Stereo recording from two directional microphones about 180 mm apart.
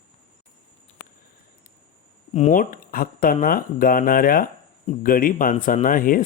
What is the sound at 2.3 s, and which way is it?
Speech, 45° left (ahead or behind).